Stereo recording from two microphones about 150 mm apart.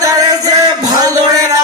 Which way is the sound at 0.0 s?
25° right (ahead or behind).